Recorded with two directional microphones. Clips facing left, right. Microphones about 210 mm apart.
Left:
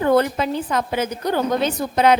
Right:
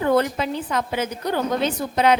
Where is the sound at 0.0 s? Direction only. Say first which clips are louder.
Left 2 dB; 45° left (ahead or behind).